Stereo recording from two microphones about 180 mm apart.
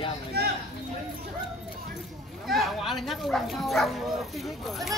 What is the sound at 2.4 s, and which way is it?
Bow-wow, centre (ahead or behind).